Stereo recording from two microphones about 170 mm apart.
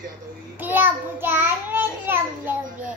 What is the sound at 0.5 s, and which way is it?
A child's voice, 10° right (ahead or behind).